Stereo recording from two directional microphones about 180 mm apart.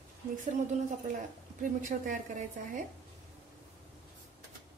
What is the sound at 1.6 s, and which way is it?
A woman's voice, 45° right (ahead or behind).